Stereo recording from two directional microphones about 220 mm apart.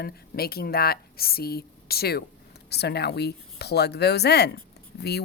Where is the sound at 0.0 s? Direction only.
45° left (ahead or behind).